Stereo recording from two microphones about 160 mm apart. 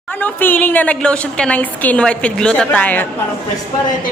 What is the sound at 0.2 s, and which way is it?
A woman's voice, 10° left (ahead or behind).